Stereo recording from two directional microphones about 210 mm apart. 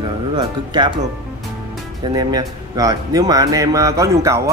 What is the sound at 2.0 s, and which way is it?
Speech, 20° right (ahead or behind).